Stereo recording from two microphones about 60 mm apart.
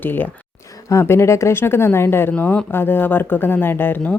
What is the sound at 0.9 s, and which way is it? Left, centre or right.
Speech, left.